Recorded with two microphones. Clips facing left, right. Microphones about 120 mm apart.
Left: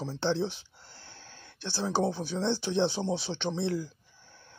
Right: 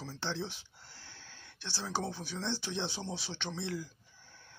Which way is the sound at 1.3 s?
40° left (ahead or behind).